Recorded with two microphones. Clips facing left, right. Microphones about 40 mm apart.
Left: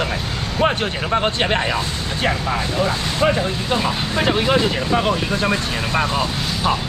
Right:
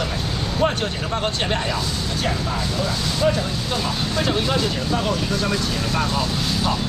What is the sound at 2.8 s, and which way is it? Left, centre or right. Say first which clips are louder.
Speech: left 2 dB; left.